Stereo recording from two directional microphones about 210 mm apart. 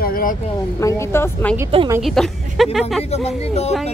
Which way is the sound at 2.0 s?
Centre (ahead or behind).